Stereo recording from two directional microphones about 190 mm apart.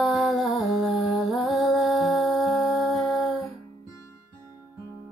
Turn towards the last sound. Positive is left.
turn(degrees=0)  # may be behind; listen again after turning